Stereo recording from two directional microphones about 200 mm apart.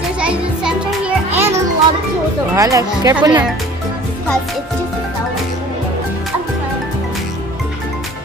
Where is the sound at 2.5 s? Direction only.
15° right (ahead or behind).